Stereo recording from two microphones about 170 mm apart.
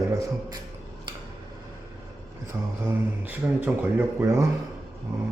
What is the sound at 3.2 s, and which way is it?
A man's voice, 10° right (ahead or behind).